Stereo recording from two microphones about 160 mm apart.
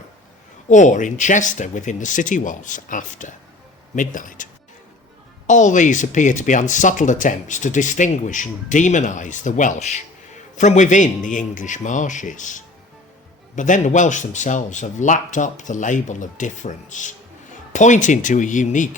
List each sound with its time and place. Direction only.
0.7 s speech: 50° left (ahead or behind)
5.5 s speech: 50° left (ahead or behind)